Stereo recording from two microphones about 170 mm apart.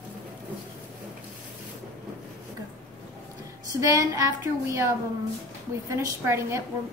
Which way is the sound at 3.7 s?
20° right (ahead or behind).